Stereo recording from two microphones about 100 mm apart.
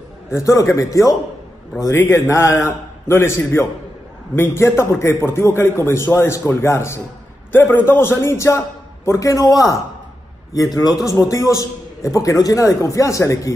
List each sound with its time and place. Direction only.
0.3 s a man's voice: 30° left (ahead or behind)